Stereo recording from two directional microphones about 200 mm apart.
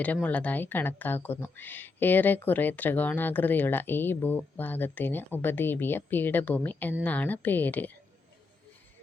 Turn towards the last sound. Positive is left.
turn(degrees=10)  # may be behind; listen again after turning